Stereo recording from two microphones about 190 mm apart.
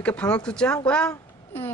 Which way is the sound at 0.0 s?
5° left (ahead or behind).